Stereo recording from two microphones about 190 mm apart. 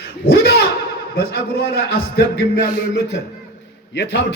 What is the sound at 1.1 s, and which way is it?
A man's voice, 55° left (ahead or behind).